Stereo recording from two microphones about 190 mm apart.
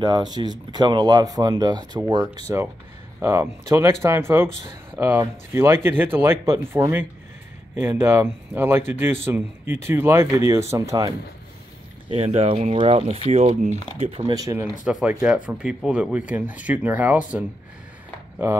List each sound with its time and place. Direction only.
0.0 s speech: 20° right (ahead or behind)
12.1 s speech: 30° right (ahead or behind)
14.3 s speech: 15° right (ahead or behind)
14.9 s speech: 5° right (ahead or behind)